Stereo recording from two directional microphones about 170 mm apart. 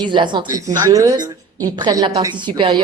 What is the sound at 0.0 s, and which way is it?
Speech, 25° right (ahead or behind).